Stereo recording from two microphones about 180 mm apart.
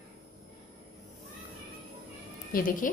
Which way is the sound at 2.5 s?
50° left (ahead or behind).